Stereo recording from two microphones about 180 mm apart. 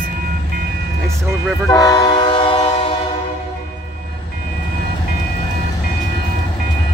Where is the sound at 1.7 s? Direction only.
20° left (ahead or behind).